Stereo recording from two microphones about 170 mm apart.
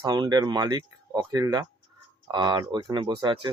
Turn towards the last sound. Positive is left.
turn(degrees=-25)  # may be behind; listen again after turning